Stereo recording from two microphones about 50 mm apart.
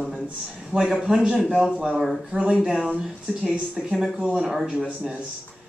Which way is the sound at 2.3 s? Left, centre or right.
Centre.